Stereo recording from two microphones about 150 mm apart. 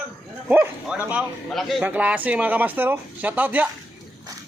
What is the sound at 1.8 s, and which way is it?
Speech, 10° right (ahead or behind).